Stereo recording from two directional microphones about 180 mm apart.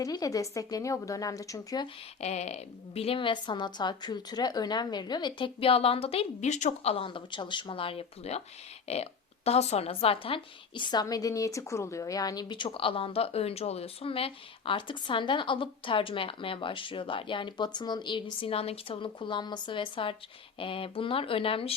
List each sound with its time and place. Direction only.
0.0 s speech: 20° left (ahead or behind)
2.2 s speech: 40° left (ahead or behind)